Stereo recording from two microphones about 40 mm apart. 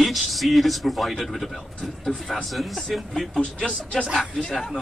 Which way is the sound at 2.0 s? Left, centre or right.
Centre.